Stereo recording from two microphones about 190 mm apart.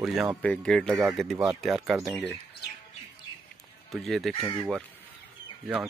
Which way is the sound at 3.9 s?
Centre (ahead or behind).